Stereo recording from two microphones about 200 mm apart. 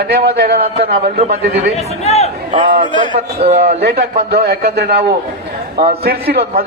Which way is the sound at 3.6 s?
55° right (ahead or behind).